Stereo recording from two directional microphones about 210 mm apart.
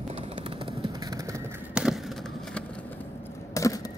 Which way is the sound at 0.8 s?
15° right (ahead or behind).